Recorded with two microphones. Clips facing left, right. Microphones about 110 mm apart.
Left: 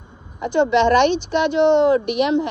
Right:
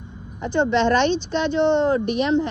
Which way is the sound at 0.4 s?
35° right (ahead or behind).